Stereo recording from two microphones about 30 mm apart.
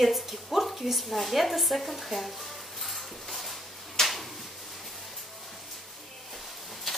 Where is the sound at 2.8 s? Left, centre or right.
Centre.